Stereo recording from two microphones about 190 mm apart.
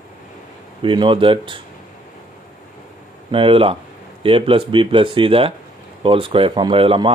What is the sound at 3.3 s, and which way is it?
Speech, 30° right (ahead or behind).